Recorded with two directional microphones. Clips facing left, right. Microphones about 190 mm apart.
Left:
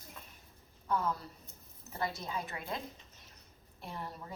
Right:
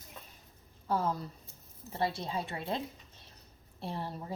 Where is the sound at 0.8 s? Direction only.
30° right (ahead or behind).